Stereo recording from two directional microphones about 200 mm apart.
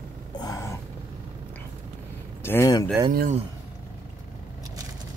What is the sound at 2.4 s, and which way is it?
Speech, 15° left (ahead or behind).